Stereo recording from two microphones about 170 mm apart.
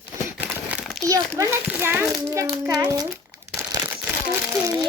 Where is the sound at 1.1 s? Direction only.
15° right (ahead or behind).